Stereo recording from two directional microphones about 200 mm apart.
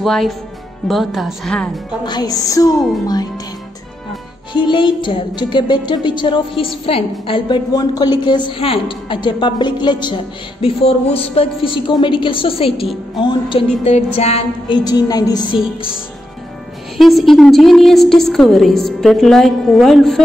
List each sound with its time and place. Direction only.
0.0 s a woman's voice: centre (ahead or behind)
2.0 s music: 20° left (ahead or behind)
4.6 s a woman's voice: 25° left (ahead or behind)
16.9 s a woman's voice: centre (ahead or behind)